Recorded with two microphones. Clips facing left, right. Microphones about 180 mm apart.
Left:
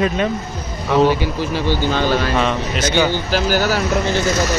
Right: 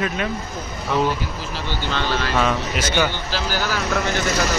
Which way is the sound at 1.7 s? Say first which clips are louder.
Left 6 dB; 45° left (ahead or behind).